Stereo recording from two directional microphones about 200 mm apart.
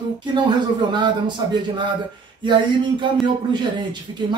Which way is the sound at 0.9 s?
25° right (ahead or behind).